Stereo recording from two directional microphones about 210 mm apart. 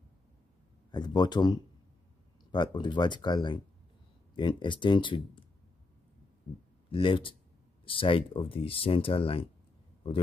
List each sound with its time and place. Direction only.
0.9 s speech: 20° left (ahead or behind)
6.9 s speech: 25° left (ahead or behind)